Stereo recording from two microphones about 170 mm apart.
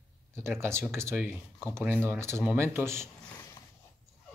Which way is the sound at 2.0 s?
15° right (ahead or behind).